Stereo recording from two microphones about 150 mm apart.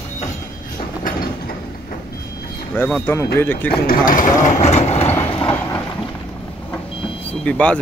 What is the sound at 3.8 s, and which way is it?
Speech, 65° left (ahead or behind).